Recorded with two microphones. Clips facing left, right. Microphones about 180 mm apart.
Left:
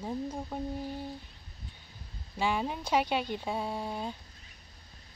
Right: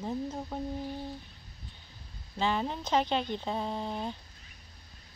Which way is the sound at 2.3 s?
10° left (ahead or behind).